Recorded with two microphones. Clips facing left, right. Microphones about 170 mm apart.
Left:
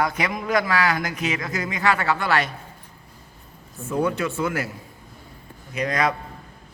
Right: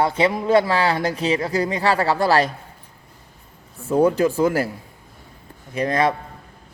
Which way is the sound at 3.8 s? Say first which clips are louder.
Right 7 dB; 35° right (ahead or behind).